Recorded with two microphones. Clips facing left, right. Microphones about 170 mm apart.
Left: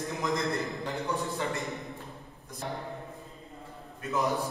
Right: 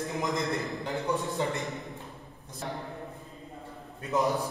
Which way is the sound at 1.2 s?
20° right (ahead or behind).